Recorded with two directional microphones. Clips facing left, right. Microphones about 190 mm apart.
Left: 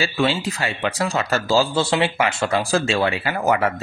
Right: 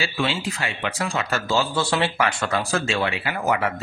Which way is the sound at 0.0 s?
40° left (ahead or behind).